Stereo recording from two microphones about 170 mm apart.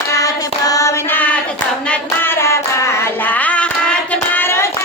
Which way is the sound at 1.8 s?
10° left (ahead or behind).